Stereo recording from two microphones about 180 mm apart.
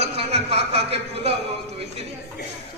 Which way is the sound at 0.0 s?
35° right (ahead or behind).